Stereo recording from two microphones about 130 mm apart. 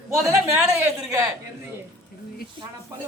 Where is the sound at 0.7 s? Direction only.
15° right (ahead or behind).